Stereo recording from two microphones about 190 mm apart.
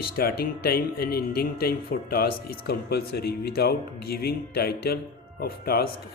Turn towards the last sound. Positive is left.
turn(degrees=55)  # may be behind; listen again after turning